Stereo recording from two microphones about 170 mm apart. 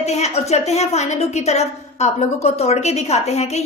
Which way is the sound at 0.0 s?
40° left (ahead or behind).